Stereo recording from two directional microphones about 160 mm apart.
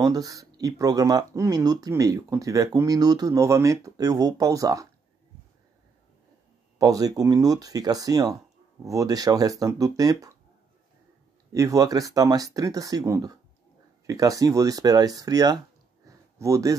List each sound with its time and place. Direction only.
0.0 s speech: 25° right (ahead or behind)
6.8 s speech: 20° right (ahead or behind)
11.5 s speech: 20° right (ahead or behind)